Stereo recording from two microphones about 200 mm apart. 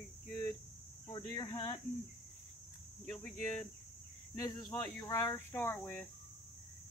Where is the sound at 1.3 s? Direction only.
20° left (ahead or behind).